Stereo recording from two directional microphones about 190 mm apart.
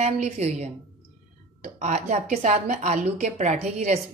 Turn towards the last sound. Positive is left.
turn(degrees=-35)  # may be behind; listen again after turning